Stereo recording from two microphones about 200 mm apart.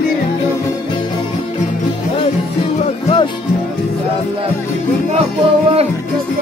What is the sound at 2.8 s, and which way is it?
Music, 30° left (ahead or behind).